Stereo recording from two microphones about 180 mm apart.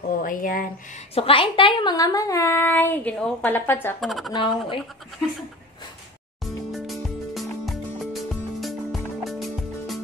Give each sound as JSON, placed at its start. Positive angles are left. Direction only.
{"t": 0.2, "sound": "speech", "side_deg": 50}
{"t": 1.1, "sound": "speech", "side_deg": 30}
{"t": 4.0, "sound": "speech", "side_deg": 0}
{"t": 4.3, "sound": "speech", "side_deg": 25}
{"t": 6.4, "sound": "music", "side_deg": 0}